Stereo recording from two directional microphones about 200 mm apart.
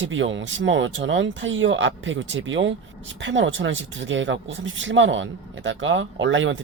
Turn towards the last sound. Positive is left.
turn(degrees=-70)  # may be behind; listen again after turning